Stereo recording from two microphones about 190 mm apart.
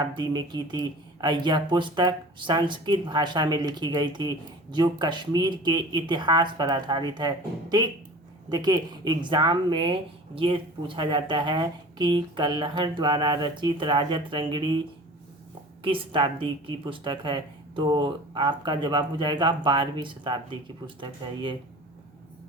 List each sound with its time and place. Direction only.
0.0 s speech: 25° right (ahead or behind)